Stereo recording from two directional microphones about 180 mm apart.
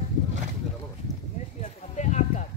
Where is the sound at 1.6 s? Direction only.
40° left (ahead or behind).